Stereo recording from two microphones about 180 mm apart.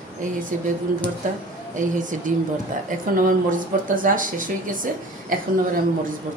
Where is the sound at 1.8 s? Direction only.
45° right (ahead or behind).